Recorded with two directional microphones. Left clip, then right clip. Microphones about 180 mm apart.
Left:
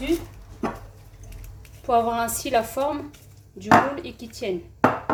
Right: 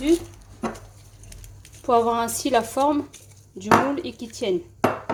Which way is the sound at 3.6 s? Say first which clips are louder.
Left 1 dB; 45° right (ahead or behind).